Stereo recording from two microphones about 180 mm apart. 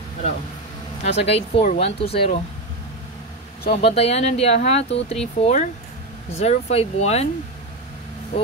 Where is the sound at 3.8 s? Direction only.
35° left (ahead or behind).